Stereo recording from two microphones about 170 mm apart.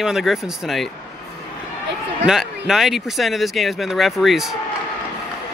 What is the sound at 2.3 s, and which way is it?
Speech, 5° right (ahead or behind).